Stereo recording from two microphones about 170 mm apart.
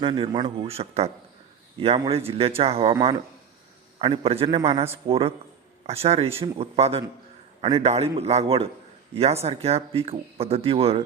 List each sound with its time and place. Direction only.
0.0 s speech: 30° right (ahead or behind)
3.9 s speech: 35° right (ahead or behind)